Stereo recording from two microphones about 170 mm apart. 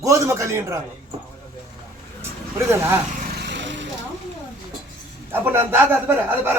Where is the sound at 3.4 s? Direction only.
90° right.